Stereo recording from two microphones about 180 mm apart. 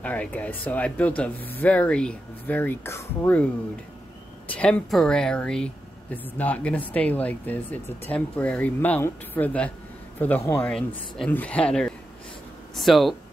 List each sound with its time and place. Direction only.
0.0 s speech: 10° left (ahead or behind)
4.5 s speech: 5° left (ahead or behind)